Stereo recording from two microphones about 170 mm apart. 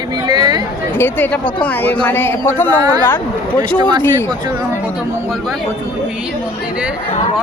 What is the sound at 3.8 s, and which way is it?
Speech, 30° right (ahead or behind).